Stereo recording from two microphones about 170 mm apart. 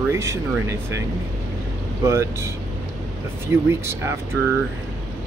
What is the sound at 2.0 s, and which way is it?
Speech, 15° right (ahead or behind).